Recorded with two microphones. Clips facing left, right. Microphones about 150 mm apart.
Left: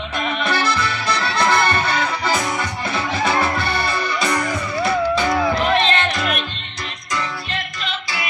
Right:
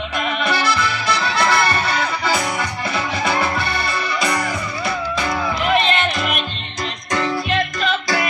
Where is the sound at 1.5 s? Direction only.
5° right (ahead or behind).